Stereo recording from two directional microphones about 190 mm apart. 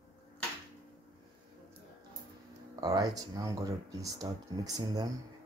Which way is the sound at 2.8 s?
20° right (ahead or behind).